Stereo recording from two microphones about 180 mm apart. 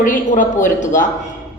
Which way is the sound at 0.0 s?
45° left (ahead or behind).